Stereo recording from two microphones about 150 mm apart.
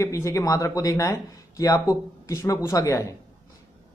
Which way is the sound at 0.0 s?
20° left (ahead or behind).